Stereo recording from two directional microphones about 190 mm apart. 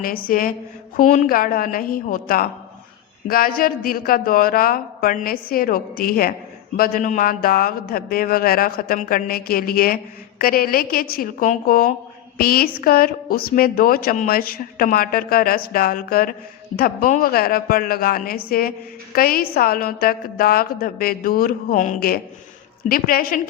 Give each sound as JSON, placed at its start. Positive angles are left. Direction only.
{"t": 0.0, "sound": "speech", "side_deg": 50}